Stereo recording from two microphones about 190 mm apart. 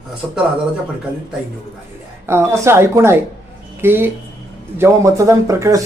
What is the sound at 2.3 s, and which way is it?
Speech, 15° right (ahead or behind).